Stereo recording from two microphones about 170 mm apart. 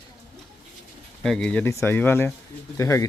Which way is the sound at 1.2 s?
5° left (ahead or behind).